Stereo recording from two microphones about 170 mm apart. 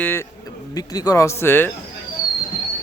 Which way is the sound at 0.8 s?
20° left (ahead or behind).